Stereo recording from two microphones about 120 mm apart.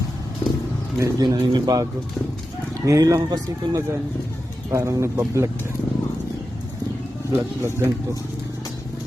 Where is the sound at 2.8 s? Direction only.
30° right (ahead or behind).